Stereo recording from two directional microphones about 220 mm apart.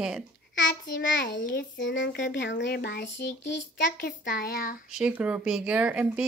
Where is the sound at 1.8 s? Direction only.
55° left (ahead or behind).